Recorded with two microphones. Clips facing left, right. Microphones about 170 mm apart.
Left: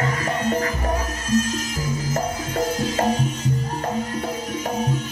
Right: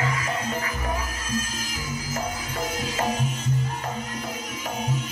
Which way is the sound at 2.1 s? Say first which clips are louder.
Left 4 dB; 45° left (ahead or behind).